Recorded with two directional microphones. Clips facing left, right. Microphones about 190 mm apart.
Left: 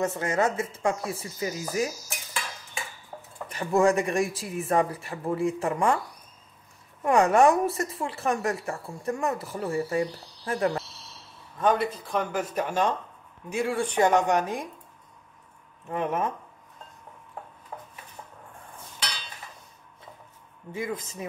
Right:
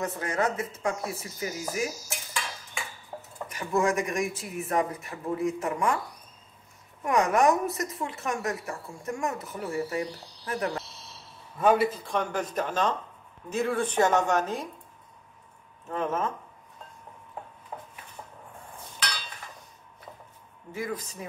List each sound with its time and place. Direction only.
0.0 s speech: 25° left (ahead or behind)
3.1 s a sound: 5° right (ahead or behind)
3.4 s a woman's voice: 30° left (ahead or behind)
7.1 s a woman's voice: 30° left (ahead or behind)
11.5 s speech: 5° right (ahead or behind); by 14.7 s 15° left (ahead or behind)
15.9 s speech: 15° left (ahead or behind)
17.7 s dishes: 10° right (ahead or behind)
20.7 s speech: 20° left (ahead or behind)